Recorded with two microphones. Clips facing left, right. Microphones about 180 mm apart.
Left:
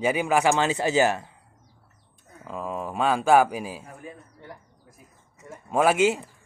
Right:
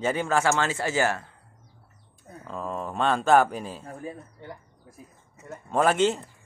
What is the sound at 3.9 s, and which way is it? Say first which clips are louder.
Speech: right 5 dB; 35° right (ahead or behind).